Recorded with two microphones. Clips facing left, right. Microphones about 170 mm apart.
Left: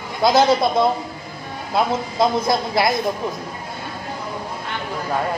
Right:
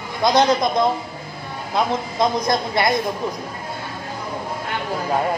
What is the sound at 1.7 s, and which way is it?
A man's voice, 5° left (ahead or behind).